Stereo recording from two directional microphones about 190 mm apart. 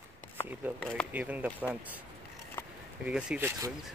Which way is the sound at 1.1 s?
10° right (ahead or behind).